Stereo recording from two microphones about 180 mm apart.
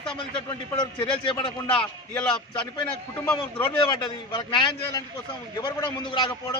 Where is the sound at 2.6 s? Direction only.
25° left (ahead or behind).